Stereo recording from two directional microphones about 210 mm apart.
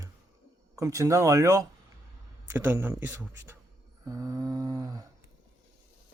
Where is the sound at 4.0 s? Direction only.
15° right (ahead or behind).